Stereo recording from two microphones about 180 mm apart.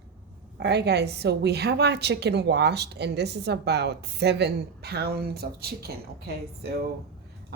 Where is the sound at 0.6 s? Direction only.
65° right (ahead or behind).